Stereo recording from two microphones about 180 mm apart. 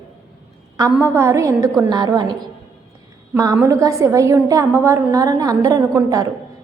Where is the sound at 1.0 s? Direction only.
15° right (ahead or behind).